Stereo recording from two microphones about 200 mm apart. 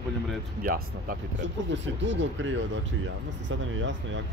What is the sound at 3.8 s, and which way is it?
Speech, 65° right (ahead or behind).